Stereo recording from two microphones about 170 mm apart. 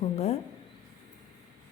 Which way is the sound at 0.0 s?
35° left (ahead or behind).